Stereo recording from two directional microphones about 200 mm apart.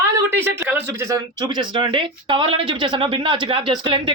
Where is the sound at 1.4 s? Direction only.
25° right (ahead or behind).